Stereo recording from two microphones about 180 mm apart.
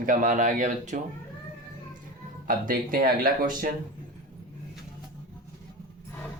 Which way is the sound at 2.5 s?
50° right (ahead or behind).